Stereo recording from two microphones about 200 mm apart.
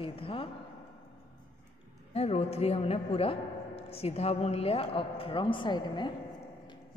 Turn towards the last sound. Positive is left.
turn(degrees=25)  # may be behind; listen again after turning